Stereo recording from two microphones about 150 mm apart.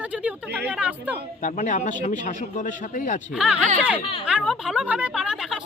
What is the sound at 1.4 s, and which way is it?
A man's voice, 55° left (ahead or behind).